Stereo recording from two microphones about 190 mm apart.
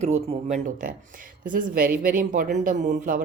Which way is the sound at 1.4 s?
45° right (ahead or behind).